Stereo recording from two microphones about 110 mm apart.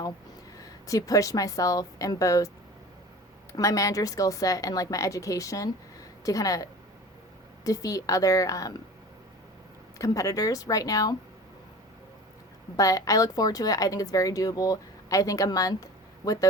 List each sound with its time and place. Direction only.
0.5 s a woman's voice: 35° left (ahead or behind)
3.5 s a woman's voice: 30° left (ahead or behind)
10.0 s a woman's voice: 30° left (ahead or behind)
12.7 s a woman's voice: 30° left (ahead or behind)